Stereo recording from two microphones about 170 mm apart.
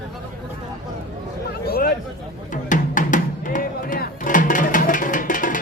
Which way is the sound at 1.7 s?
60° left (ahead or behind).